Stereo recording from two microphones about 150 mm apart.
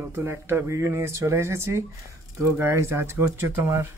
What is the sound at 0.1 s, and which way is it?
Speech, 15° right (ahead or behind).